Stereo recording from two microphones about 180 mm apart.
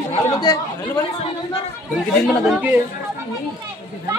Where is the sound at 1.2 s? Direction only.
35° left (ahead or behind).